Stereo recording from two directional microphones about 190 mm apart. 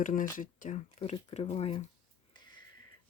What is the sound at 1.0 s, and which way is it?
Speech, 35° left (ahead or behind).